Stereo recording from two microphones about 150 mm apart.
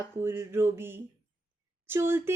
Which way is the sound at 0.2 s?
15° right (ahead or behind).